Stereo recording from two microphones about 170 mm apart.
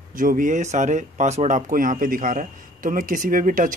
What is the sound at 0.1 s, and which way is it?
Speech, 50° right (ahead or behind).